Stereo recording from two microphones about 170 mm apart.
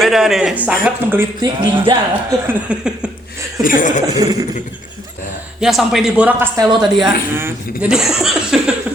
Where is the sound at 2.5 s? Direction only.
5° right (ahead or behind).